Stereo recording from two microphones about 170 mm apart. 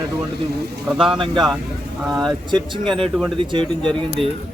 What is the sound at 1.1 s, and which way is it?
Speech, 30° right (ahead or behind).